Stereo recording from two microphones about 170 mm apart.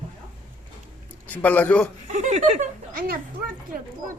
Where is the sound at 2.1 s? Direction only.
45° right (ahead or behind).